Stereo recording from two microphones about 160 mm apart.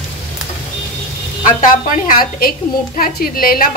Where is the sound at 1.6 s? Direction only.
60° left (ahead or behind).